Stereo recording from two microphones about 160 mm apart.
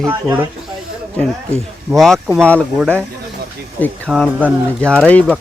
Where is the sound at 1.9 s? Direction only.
Centre (ahead or behind).